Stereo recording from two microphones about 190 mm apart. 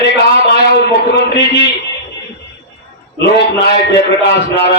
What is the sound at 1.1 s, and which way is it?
Speech, 60° left (ahead or behind).